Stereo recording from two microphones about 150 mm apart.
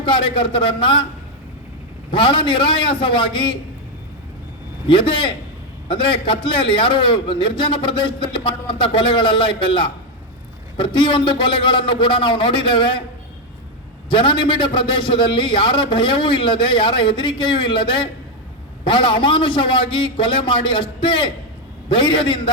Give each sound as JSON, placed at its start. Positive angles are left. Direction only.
{"t": 0.0, "sound": "a man's voice", "side_deg": 35}
{"t": 2.0, "sound": "a man's voice", "side_deg": 35}
{"t": 4.9, "sound": "a man's voice", "side_deg": 35}
{"t": 14.1, "sound": "a man's voice", "side_deg": 35}